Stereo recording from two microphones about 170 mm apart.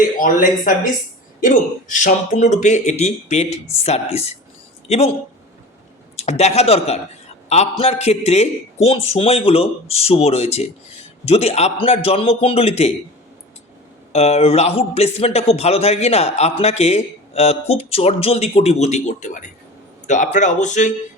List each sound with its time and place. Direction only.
0.2 s speech: 50° left (ahead or behind)
6.1 s speech: 40° left (ahead or behind)
14.1 s speech: 40° left (ahead or behind)